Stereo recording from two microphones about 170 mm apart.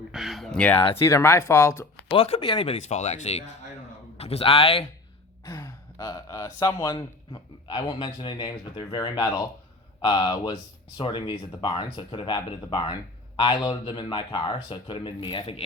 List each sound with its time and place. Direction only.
0.1 s a sound: centre (ahead or behind)
1.0 s speech: 15° left (ahead or behind)
2.0 s speech: 35° left (ahead or behind)
5.5 s speech: 20° left (ahead or behind)